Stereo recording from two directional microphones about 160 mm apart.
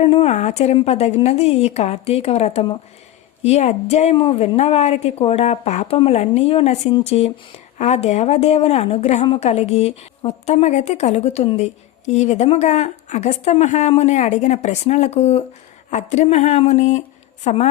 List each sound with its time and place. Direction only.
0.0 s a woman's voice: 35° left (ahead or behind)